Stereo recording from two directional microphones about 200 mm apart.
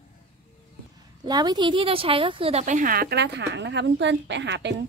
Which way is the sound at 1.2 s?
20° right (ahead or behind).